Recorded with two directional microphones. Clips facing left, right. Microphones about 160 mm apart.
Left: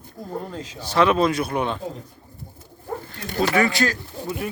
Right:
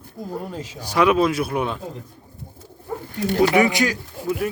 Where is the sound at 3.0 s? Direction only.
15° right (ahead or behind).